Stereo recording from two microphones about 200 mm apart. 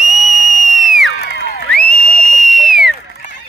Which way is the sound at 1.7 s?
5° left (ahead or behind).